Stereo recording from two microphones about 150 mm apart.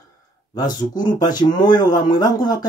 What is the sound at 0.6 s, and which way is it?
Speech, 25° left (ahead or behind).